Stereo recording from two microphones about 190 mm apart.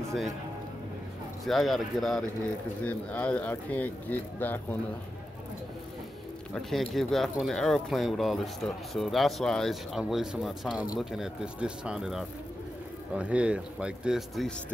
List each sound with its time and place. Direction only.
1.4 s speech: centre (ahead or behind)
6.5 s speech: centre (ahead or behind)